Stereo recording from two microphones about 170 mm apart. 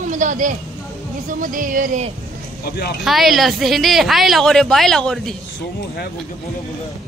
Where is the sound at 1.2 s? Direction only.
55° right (ahead or behind).